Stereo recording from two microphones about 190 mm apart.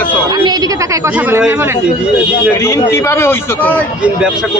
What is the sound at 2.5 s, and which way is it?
Speech, 15° left (ahead or behind).